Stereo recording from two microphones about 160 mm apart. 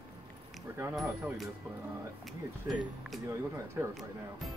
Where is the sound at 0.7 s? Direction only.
20° right (ahead or behind).